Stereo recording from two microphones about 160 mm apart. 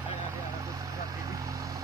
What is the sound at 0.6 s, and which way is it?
Vehicle, 20° right (ahead or behind).